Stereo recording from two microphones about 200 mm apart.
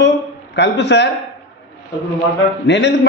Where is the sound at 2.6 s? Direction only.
60° left (ahead or behind).